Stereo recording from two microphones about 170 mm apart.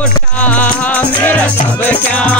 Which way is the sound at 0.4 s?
10° left (ahead or behind).